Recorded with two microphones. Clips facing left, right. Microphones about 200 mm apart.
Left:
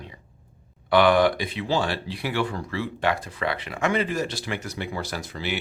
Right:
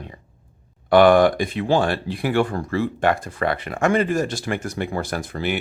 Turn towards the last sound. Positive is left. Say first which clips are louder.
# right 6 dB
turn(degrees=-50)  # may be behind; listen again after turning